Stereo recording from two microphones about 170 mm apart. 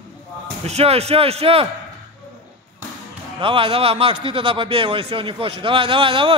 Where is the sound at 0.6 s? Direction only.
35° right (ahead or behind).